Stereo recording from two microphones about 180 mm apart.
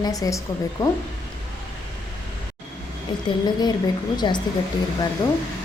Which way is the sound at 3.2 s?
25° left (ahead or behind).